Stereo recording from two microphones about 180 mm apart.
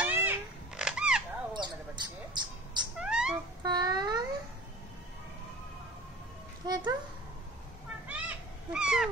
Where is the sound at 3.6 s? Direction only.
20° right (ahead or behind).